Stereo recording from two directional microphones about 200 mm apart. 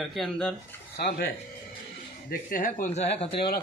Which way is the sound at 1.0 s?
50° left (ahead or behind).